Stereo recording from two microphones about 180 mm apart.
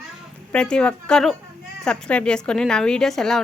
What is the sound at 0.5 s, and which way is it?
A woman's voice, 5° left (ahead or behind).